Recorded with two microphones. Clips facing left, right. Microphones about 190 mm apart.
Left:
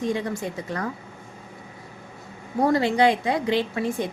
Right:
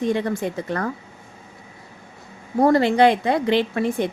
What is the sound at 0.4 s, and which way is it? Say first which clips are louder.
Speech: right 5 dB; 65° right (ahead or behind).